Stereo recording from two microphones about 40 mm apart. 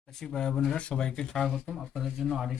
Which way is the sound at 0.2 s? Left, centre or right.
Centre.